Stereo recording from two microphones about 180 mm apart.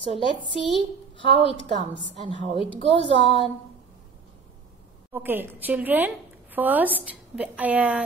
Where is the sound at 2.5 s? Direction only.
30° left (ahead or behind).